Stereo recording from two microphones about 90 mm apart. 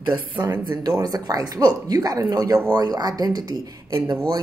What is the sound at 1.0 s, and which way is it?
Speech, 45° right (ahead or behind).